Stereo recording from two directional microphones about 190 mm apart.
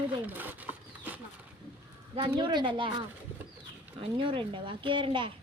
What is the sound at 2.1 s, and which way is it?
Speech, 25° right (ahead or behind).